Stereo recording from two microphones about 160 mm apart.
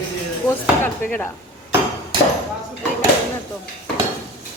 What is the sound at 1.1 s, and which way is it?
Speech, 15° left (ahead or behind).